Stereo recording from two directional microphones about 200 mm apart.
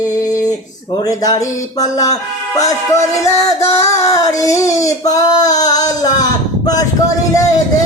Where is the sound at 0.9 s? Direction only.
20° left (ahead or behind).